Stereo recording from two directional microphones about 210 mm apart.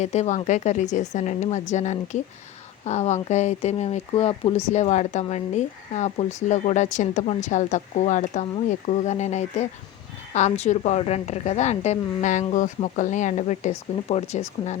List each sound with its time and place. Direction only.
0.0 s speech: 30° left (ahead or behind)